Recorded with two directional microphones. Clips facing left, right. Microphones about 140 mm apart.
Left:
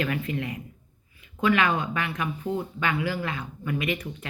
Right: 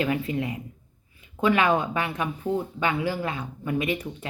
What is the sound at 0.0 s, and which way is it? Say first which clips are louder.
Speech: right 3 dB; 25° right (ahead or behind).